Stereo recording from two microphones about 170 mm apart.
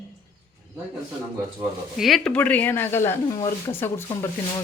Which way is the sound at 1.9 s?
Centre (ahead or behind).